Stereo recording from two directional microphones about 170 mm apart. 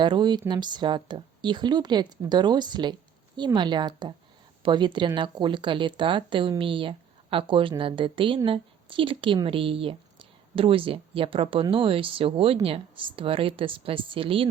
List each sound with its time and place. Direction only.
0.0 s speech: 25° right (ahead or behind)